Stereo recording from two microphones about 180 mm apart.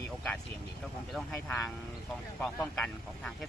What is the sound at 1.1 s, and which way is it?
Speech, centre (ahead or behind).